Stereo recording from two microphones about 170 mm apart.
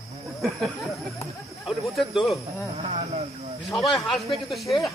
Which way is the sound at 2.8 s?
40° right (ahead or behind).